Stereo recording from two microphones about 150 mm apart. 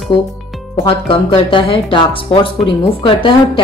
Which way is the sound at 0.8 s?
40° left (ahead or behind).